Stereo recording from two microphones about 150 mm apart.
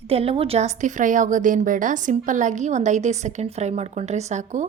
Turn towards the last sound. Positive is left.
turn(degrees=-55)  # may be behind; listen again after turning